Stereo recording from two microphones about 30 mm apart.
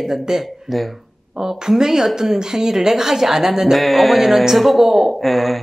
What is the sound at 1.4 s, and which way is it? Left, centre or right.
A woman's voice, centre.